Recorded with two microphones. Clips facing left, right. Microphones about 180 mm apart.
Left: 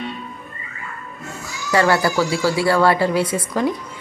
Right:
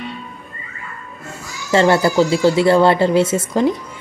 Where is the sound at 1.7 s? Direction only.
25° right (ahead or behind).